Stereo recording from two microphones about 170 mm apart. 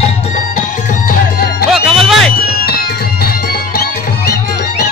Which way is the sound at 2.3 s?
65° left (ahead or behind).